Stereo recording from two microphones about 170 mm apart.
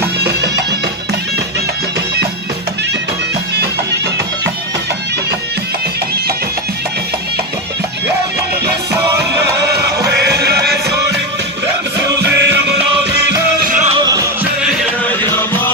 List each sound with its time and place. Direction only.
9.7 s music: 70° right (ahead or behind)
12.2 s music: 85° right
13.2 s music: 60° right (ahead or behind)
15.0 s music: 15° left (ahead or behind)